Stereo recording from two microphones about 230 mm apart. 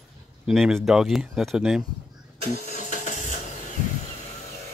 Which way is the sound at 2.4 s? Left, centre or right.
Right.